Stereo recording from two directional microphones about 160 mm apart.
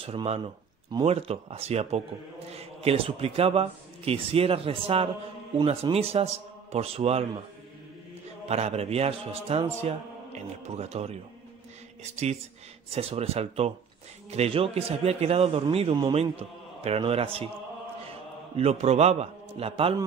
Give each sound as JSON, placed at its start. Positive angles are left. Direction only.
{"t": 0.0, "sound": "a man's voice", "side_deg": -35}
{"t": 8.5, "sound": "a man's voice", "side_deg": -40}
{"t": 18.6, "sound": "a man's voice", "side_deg": -40}